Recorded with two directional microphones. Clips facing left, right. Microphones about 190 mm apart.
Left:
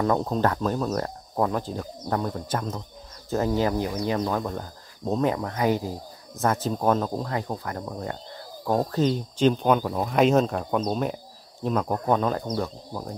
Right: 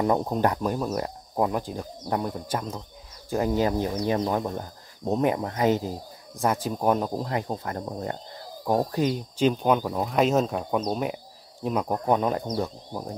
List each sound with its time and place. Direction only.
0.0 s speech: 15° right (ahead or behind)
8.6 s speech: 15° right (ahead or behind)